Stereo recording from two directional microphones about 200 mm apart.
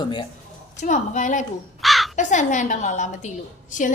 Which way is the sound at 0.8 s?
40° left (ahead or behind).